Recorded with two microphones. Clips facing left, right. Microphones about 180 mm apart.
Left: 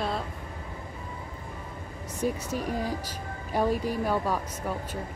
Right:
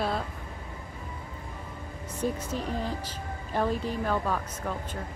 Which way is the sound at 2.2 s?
10° left (ahead or behind).